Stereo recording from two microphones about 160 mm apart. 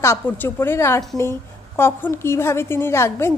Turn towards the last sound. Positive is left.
turn(degrees=15)  # may be behind; listen again after turning